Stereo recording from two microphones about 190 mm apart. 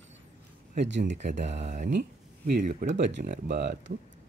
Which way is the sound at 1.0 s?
40° right (ahead or behind).